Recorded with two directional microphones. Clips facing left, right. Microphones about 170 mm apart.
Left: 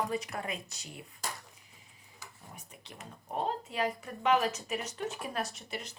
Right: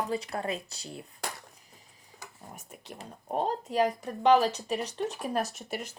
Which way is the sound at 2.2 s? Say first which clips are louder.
Right 4 dB; 45° right (ahead or behind).